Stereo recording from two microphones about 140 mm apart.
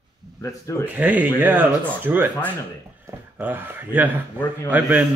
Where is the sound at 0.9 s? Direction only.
10° right (ahead or behind).